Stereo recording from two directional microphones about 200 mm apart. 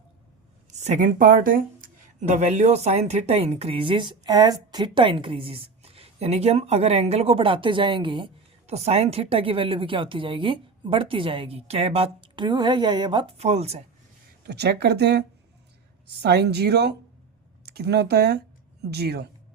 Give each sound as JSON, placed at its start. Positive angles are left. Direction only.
{"t": 0.7, "sound": "speech", "side_deg": -35}
{"t": 14.4, "sound": "speech", "side_deg": -55}